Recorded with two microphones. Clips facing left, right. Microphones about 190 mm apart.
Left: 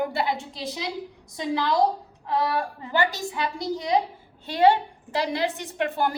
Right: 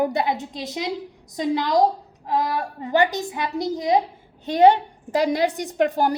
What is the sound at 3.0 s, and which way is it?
A child's voice, 20° right (ahead or behind).